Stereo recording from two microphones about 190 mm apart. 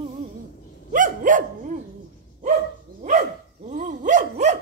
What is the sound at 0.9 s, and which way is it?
Dog, 45° right (ahead or behind).